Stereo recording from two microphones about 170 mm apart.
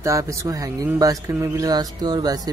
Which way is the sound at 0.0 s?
20° right (ahead or behind).